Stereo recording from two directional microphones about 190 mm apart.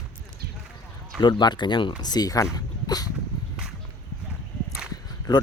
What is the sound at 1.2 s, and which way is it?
Speech, 25° left (ahead or behind).